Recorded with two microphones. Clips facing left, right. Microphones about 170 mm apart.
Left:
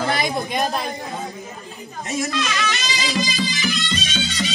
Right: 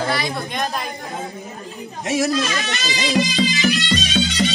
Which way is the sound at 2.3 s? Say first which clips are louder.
Right 2 dB; 40° right (ahead or behind).